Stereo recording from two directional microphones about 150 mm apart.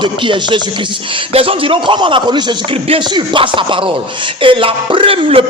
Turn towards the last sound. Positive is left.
turn(degrees=-35)  # may be behind; listen again after turning